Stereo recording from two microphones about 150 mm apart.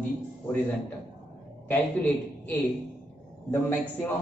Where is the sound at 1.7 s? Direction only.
10° left (ahead or behind).